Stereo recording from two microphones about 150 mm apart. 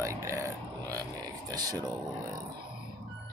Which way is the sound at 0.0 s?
20° right (ahead or behind).